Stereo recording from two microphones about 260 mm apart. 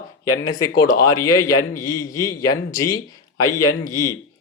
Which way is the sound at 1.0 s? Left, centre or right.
Centre.